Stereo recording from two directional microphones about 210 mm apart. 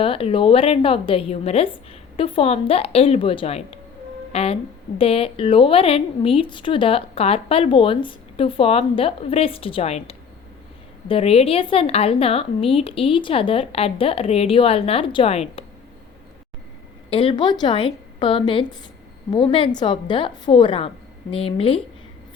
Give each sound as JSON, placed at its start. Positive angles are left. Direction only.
{"t": 0.0, "sound": "a woman's voice", "side_deg": 25}
{"t": 17.1, "sound": "a woman's voice", "side_deg": 25}